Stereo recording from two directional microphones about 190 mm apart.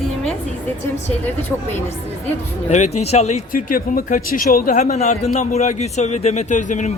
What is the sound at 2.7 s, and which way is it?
Speech, 35° left (ahead or behind).